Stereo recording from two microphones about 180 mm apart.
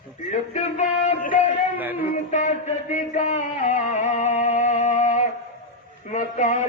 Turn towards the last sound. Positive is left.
turn(degrees=45)  # may be behind; listen again after turning